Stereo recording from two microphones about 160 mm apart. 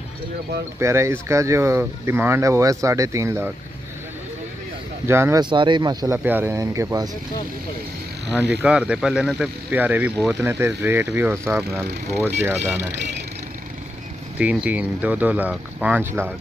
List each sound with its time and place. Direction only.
0.7 s speech: 15° right (ahead or behind)
5.0 s speech: 15° right (ahead or behind)
5.4 s speech: 30° right (ahead or behind)
6.1 s speech: 10° right (ahead or behind)
8.3 s speech: 5° right (ahead or behind)
14.4 s speech: 10° right (ahead or behind)